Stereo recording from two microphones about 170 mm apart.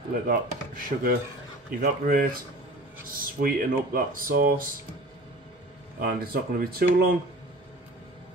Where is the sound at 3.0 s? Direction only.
60° right (ahead or behind).